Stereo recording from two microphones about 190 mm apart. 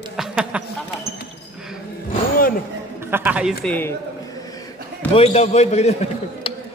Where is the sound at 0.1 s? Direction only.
5° right (ahead or behind).